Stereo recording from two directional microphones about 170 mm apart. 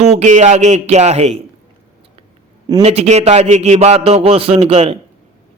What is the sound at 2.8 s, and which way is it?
A man's voice, 40° right (ahead or behind).